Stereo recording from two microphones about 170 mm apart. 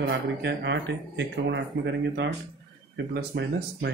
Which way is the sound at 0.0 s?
90° right.